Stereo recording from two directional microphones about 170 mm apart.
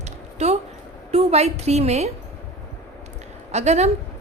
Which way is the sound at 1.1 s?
35° right (ahead or behind).